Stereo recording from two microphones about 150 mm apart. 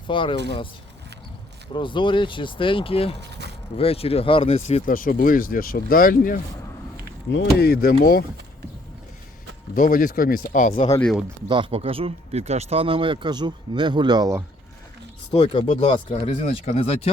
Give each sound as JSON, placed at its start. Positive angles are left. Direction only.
{"t": 0.1, "sound": "speech", "side_deg": 35}
{"t": 1.7, "sound": "speech", "side_deg": 30}
{"t": 3.4, "sound": "a sound", "side_deg": -90}
{"t": 3.8, "sound": "speech", "side_deg": 40}
{"t": 4.9, "sound": "speech", "side_deg": 65}
{"t": 7.6, "sound": "speech", "side_deg": 90}
{"t": 9.7, "sound": "speech", "side_deg": 65}
{"t": 11.4, "sound": "speech", "side_deg": -35}
{"t": 15.3, "sound": "speech", "side_deg": 40}